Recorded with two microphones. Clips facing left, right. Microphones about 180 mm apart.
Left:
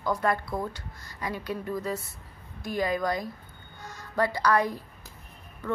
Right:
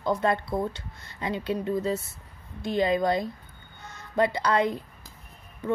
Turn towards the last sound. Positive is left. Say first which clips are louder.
# right 4 dB
turn(degrees=-20)  # may be behind; listen again after turning